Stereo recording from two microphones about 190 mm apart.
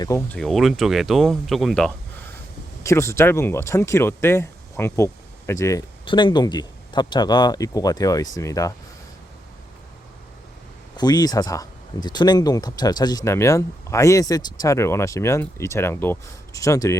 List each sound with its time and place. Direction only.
0.0 s speech: 15° left (ahead or behind)
0.3 s speech: centre (ahead or behind)
2.8 s speech: 15° left (ahead or behind)
10.9 s speech: 20° left (ahead or behind)